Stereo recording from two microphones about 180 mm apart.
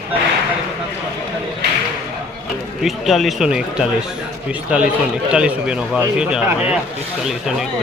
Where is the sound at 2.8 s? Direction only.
Centre (ahead or behind).